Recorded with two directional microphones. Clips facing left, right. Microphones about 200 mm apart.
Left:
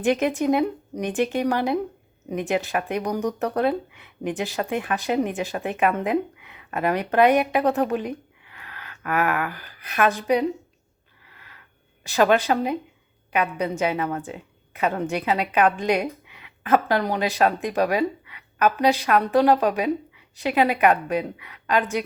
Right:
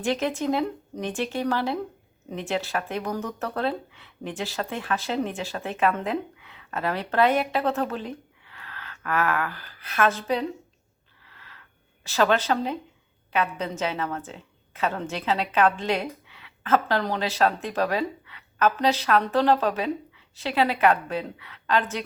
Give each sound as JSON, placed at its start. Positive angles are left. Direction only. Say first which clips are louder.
{"t": 0.0, "sound": "a woman's voice", "louder": "left 4 dB", "side_deg": 15}
{"t": 11.3, "sound": "a sound", "louder": "even", "side_deg": 15}
{"t": 12.0, "sound": "a woman's voice", "louder": "left 3 dB", "side_deg": 15}